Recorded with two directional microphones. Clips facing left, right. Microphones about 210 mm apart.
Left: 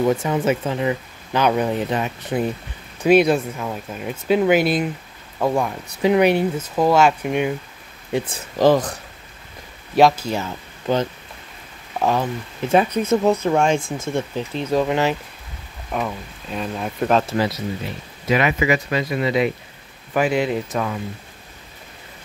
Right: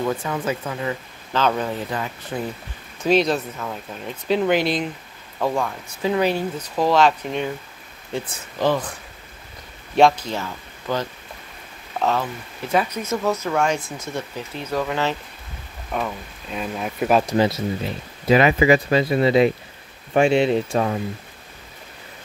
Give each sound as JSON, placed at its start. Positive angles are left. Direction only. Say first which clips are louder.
{"t": 0.0, "sound": "speech", "louder": "left 5 dB", "side_deg": 20}
{"t": 6.7, "sound": "speech", "louder": "left 1 dB", "side_deg": 5}
{"t": 8.5, "sound": "speech", "louder": "left 6 dB", "side_deg": 40}
{"t": 9.9, "sound": "speech", "louder": "left 1 dB", "side_deg": 5}
{"t": 12.6, "sound": "speech", "louder": "left 5 dB", "side_deg": 25}
{"t": 15.9, "sound": "speech", "louder": "left 1 dB", "side_deg": 5}
{"t": 17.4, "sound": "speech", "louder": "right 2 dB", "side_deg": -30}